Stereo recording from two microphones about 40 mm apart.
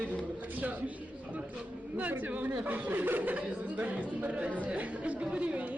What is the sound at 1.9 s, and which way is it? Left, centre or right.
Speech, right.